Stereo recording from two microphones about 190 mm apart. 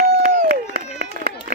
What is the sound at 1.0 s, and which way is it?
Run, 45° right (ahead or behind).